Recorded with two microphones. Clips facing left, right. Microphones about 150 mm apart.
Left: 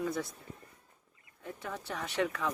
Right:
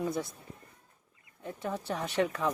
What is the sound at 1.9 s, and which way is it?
Speech, 35° right (ahead or behind).